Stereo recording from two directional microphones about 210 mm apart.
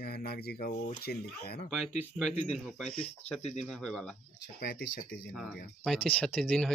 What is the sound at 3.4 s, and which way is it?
Speech, 35° left (ahead or behind).